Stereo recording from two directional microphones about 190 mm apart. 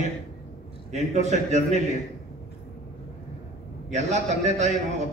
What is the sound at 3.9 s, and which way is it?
Speech, 35° right (ahead or behind).